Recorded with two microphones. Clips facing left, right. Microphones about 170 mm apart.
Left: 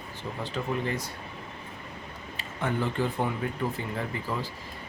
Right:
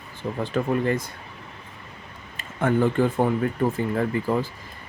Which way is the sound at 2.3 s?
50° right (ahead or behind).